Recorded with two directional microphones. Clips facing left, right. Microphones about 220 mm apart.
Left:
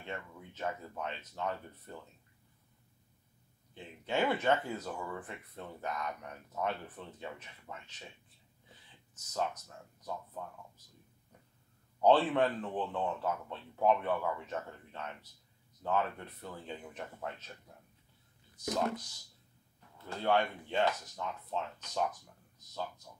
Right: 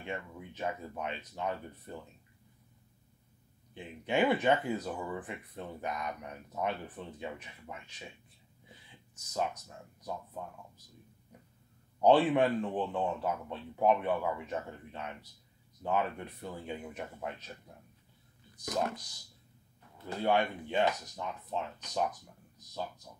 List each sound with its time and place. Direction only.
0.0 s speech: 15° right (ahead or behind)
3.7 s speech: 15° right (ahead or behind)
12.0 s speech: 15° right (ahead or behind)
20.0 s speech: 15° right (ahead or behind)